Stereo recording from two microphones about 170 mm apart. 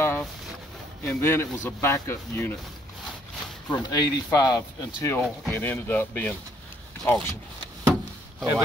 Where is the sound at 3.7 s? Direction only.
25° left (ahead or behind).